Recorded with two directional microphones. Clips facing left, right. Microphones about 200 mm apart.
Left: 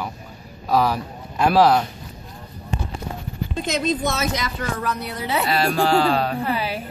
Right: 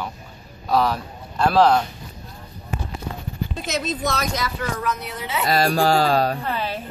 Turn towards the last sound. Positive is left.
turn(degrees=10)  # may be behind; listen again after turning